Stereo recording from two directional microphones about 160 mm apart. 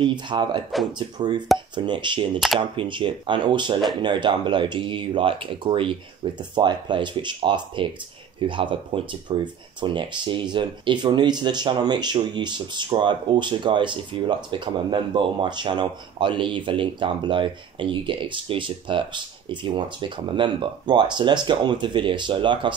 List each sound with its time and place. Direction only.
0.0 s speech: 30° right (ahead or behind)